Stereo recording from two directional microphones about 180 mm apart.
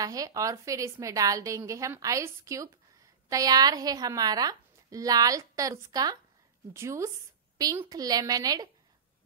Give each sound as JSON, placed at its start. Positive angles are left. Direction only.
{"t": 0.0, "sound": "a woman's voice", "side_deg": -20}